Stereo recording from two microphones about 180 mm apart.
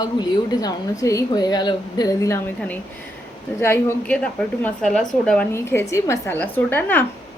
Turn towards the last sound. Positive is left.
turn(degrees=10)  # may be behind; listen again after turning